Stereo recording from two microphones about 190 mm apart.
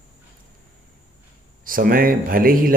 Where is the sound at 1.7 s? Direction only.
50° right (ahead or behind).